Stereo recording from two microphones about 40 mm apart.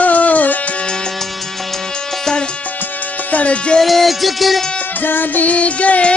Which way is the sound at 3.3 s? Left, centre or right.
Left.